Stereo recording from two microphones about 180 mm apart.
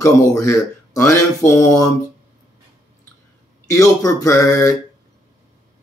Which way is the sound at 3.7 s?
20° left (ahead or behind).